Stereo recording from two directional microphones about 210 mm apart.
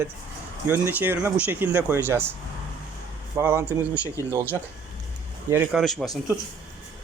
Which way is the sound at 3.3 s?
10° right (ahead or behind).